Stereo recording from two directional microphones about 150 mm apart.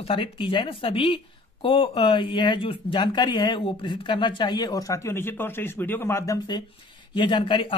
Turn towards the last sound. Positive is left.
turn(degrees=35)  # may be behind; listen again after turning